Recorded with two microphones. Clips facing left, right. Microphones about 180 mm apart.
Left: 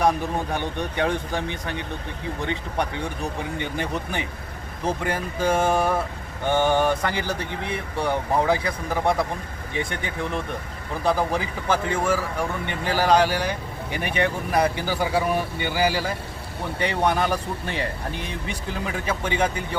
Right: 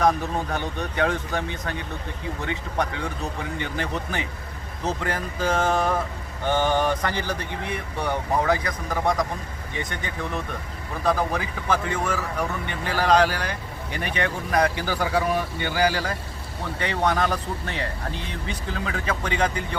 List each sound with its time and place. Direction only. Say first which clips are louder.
0.5 s speech: left 1 dB; 15° left (ahead or behind)